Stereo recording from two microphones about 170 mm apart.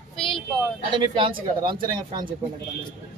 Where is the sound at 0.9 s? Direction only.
30° right (ahead or behind).